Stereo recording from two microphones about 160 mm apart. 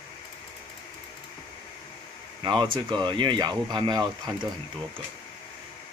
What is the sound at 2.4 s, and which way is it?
Speech, 30° right (ahead or behind).